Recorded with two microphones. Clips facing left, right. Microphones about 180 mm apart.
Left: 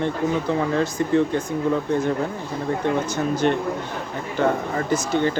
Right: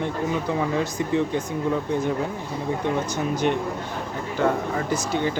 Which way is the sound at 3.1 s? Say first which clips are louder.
Left 2 dB; 15° right (ahead or behind).